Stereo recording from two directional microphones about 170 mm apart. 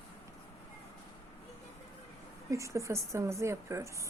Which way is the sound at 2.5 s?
20° right (ahead or behind).